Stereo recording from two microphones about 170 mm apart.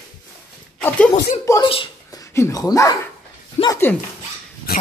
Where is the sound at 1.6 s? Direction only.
30° left (ahead or behind).